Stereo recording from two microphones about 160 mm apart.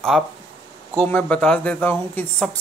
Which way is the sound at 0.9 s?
10° left (ahead or behind).